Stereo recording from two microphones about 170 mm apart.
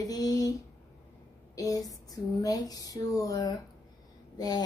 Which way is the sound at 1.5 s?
20° left (ahead or behind).